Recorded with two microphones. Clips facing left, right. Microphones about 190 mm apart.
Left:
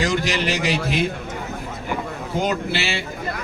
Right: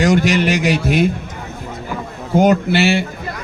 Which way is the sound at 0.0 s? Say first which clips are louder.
Right 8 dB; 55° right (ahead or behind).